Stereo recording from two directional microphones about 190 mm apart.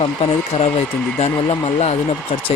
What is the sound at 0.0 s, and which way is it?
Speech, 30° left (ahead or behind).